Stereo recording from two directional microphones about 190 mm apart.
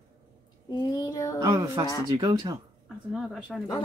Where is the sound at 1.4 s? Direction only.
20° right (ahead or behind).